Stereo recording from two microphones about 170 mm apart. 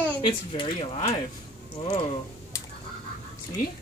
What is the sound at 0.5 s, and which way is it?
Speech, 30° left (ahead or behind).